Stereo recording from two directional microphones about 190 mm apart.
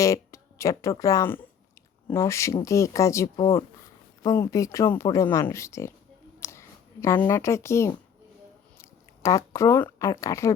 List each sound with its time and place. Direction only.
0.0 s a woman's voice: 15° left (ahead or behind)